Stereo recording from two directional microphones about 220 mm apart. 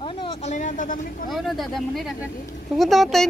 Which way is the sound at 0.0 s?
25° left (ahead or behind).